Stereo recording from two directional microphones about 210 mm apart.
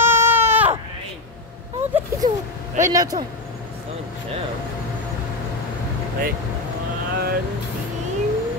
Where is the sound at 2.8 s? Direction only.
15° right (ahead or behind).